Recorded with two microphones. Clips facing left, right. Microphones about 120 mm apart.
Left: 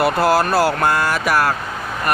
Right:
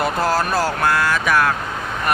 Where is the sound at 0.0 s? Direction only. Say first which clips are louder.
Left 4 dB; 10° left (ahead or behind).